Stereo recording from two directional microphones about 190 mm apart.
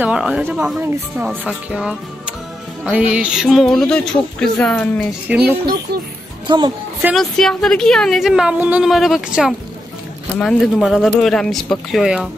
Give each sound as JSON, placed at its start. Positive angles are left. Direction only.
{"t": 0.0, "sound": "a woman's voice", "side_deg": -5}
{"t": 5.3, "sound": "speech", "side_deg": -5}
{"t": 6.4, "sound": "speech", "side_deg": -25}
{"t": 7.0, "sound": "a woman's voice", "side_deg": -10}